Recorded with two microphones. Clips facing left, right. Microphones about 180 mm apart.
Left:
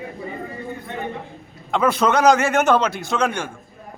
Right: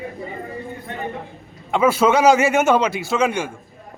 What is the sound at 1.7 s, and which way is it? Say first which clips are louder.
A man's voice: right 2 dB; 5° right (ahead or behind).